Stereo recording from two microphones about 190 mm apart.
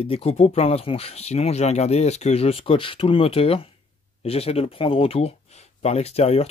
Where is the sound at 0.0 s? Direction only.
30° left (ahead or behind).